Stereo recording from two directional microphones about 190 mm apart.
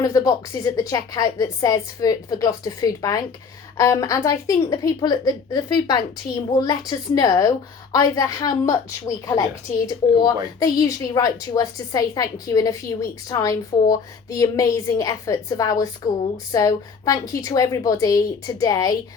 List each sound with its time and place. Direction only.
0.0 s a woman's voice: 20° left (ahead or behind)
7.2 s a woman's voice: 20° left (ahead or behind)